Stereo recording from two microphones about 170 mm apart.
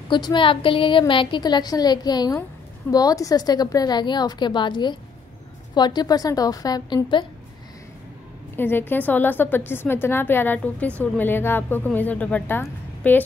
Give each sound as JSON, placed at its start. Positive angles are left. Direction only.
{"t": 0.1, "sound": "a woman's voice", "side_deg": 30}
{"t": 8.5, "sound": "a woman's voice", "side_deg": 10}
{"t": 12.6, "sound": "a sound", "side_deg": 10}